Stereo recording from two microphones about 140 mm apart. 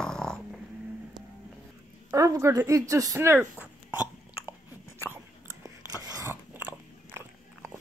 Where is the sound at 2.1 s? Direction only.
25° right (ahead or behind).